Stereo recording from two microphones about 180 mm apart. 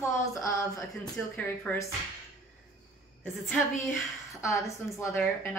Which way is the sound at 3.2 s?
5° left (ahead or behind).